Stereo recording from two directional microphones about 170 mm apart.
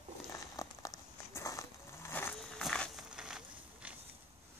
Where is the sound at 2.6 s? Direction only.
Centre (ahead or behind).